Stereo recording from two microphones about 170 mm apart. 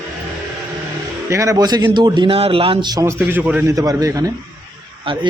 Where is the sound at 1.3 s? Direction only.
20° right (ahead or behind).